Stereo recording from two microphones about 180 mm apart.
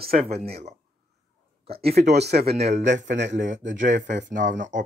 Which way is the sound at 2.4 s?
35° right (ahead or behind).